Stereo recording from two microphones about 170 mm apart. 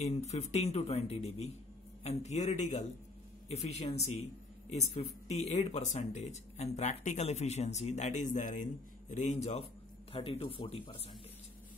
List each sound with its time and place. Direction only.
0.0 s speech: 40° left (ahead or behind)